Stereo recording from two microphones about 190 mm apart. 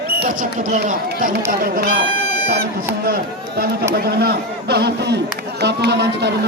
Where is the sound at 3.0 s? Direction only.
50° right (ahead or behind).